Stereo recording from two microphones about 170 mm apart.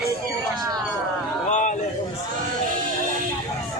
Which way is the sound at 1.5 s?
45° left (ahead or behind).